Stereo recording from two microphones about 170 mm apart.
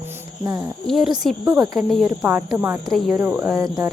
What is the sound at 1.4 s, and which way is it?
Speech, 20° right (ahead or behind).